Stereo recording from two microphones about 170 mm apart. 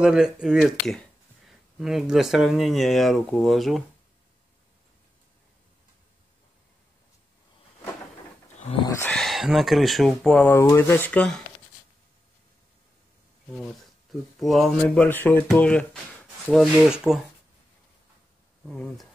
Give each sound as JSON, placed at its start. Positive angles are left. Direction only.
{"t": 0.0, "sound": "speech", "side_deg": -5}
{"t": 8.8, "sound": "speech", "side_deg": 15}
{"t": 9.1, "sound": "speech", "side_deg": 0}
{"t": 14.4, "sound": "speech", "side_deg": 0}
{"t": 18.7, "sound": "speech", "side_deg": 0}